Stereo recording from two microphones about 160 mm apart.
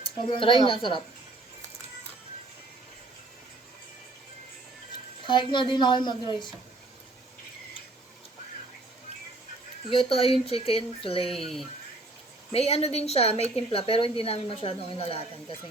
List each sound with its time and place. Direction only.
0.0 s a woman's voice: 30° left (ahead or behind)
5.2 s speech: 30° left (ahead or behind)
10.0 s a woman's voice: 35° left (ahead or behind)
11.3 s speech: centre (ahead or behind)
12.5 s a woman's voice: 40° left (ahead or behind)